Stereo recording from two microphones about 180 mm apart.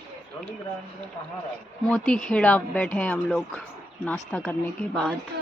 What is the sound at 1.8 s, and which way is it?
Speech, 5° left (ahead or behind).